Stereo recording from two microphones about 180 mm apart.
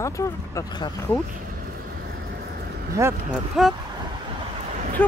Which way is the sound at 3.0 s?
5° right (ahead or behind).